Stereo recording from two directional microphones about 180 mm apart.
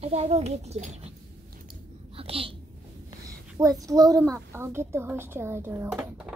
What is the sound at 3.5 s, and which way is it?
A woman's voice, 20° right (ahead or behind).